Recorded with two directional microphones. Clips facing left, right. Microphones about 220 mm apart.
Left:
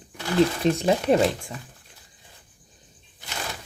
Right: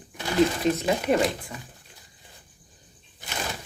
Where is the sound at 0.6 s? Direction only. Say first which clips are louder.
Left 2 dB; 35° left (ahead or behind).